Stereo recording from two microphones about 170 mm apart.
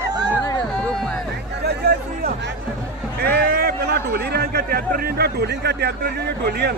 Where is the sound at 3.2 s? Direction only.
65° right (ahead or behind).